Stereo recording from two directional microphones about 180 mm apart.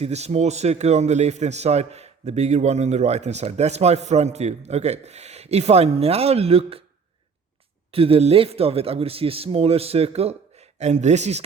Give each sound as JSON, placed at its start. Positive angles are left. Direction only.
{"t": 0.0, "sound": "a man's voice", "side_deg": -35}
{"t": 7.9, "sound": "a man's voice", "side_deg": -30}